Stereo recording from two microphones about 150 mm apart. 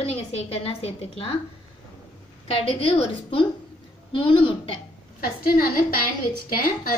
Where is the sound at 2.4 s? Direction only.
40° left (ahead or behind).